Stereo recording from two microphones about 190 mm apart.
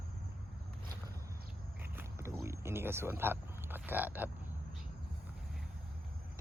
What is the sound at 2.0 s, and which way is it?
Speech, 15° right (ahead or behind).